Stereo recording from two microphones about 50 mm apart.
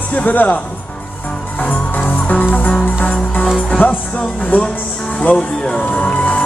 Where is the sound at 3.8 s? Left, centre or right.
Left.